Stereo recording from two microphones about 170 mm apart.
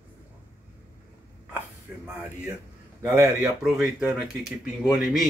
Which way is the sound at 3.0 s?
15° right (ahead or behind).